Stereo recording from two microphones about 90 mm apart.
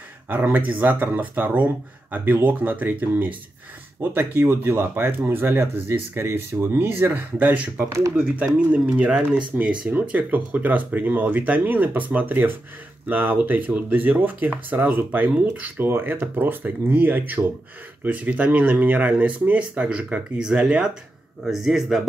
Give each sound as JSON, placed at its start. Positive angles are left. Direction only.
{"t": 0.3, "sound": "a man's voice", "side_deg": -20}